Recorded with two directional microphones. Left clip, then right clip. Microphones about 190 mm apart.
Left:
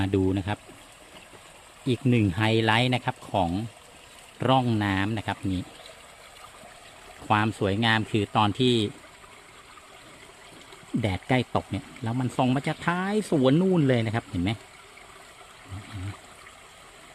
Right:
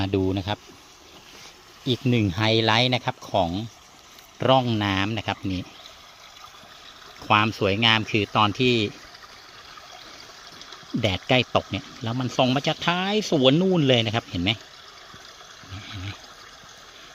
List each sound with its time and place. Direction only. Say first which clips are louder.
0.0 s speech: right 1 dB; 10° left (ahead or behind)
1.9 s speech: right 1 dB; 5° left (ahead or behind)
7.3 s speech: right 4 dB; 5° left (ahead or behind)
11.0 s speech: right 6 dB; 5° left (ahead or behind)